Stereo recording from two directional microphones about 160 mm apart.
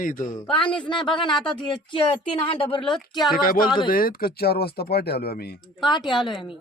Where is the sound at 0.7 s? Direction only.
30° left (ahead or behind).